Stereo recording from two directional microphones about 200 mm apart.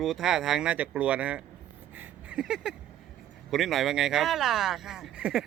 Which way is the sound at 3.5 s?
Centre (ahead or behind).